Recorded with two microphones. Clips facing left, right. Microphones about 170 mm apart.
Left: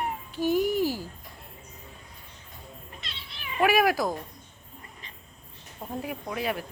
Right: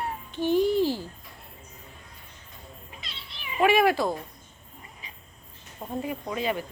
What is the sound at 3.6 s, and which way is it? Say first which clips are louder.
Speech: right 2 dB; 10° left (ahead or behind).